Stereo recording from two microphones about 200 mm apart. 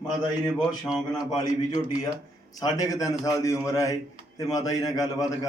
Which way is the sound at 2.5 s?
20° left (ahead or behind).